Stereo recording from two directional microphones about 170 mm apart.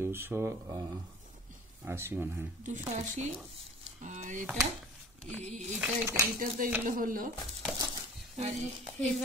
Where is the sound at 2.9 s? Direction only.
40° right (ahead or behind).